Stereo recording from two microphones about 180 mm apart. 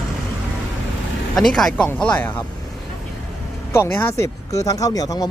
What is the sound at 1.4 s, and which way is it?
Speech, centre (ahead or behind).